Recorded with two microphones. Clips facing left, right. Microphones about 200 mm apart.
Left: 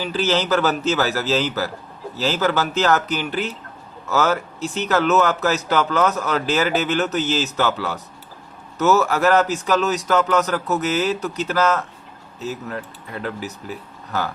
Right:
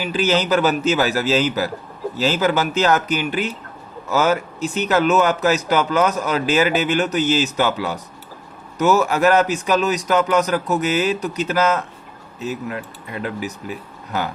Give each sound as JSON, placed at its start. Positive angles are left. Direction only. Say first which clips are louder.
{"t": 0.0, "sound": "speech", "louder": "right 2 dB", "side_deg": -15}